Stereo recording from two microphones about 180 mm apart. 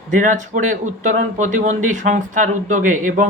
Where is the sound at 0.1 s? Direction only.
45° right (ahead or behind).